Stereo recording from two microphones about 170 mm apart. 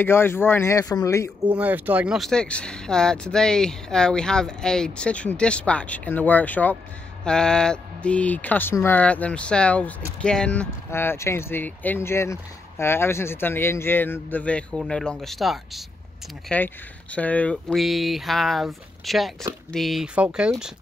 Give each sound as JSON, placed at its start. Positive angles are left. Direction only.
{"t": 0.0, "sound": "speech", "side_deg": 15}
{"t": 1.4, "sound": "speech", "side_deg": -10}